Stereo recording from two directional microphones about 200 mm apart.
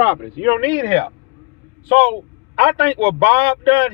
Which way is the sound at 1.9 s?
25° right (ahead or behind).